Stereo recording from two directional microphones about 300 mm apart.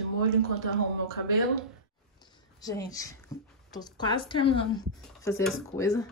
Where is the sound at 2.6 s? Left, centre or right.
Centre.